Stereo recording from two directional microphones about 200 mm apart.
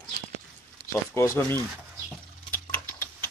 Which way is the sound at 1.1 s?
15° left (ahead or behind).